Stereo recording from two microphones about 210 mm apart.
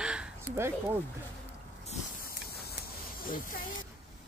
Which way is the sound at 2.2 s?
50° left (ahead or behind).